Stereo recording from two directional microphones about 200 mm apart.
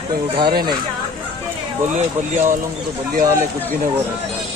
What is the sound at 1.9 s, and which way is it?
Speech, 35° right (ahead or behind).